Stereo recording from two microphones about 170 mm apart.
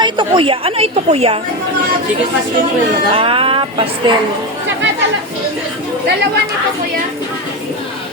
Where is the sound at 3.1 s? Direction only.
30° right (ahead or behind).